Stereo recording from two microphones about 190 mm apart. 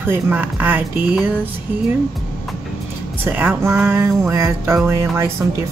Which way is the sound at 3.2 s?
10° right (ahead or behind).